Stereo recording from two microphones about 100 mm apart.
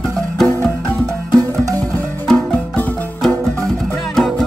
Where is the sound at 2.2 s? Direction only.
10° left (ahead or behind).